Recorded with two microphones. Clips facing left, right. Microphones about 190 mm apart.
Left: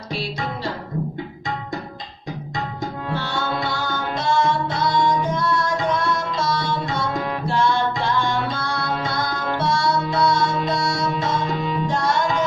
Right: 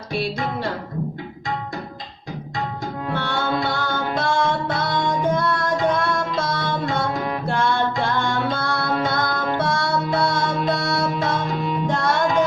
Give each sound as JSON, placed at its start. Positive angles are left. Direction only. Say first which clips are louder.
{"t": 3.2, "sound": "music", "louder": "right 3 dB", "side_deg": -55}